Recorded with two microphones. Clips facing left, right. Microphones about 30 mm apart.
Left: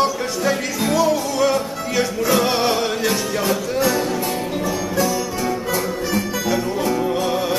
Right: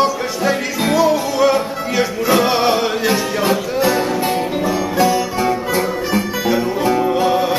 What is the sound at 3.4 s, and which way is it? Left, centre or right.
Music, right.